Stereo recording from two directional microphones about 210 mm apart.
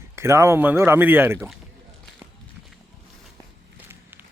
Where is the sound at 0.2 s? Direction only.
10° right (ahead or behind).